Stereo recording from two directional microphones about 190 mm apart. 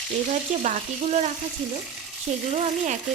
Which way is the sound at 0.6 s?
35° right (ahead or behind).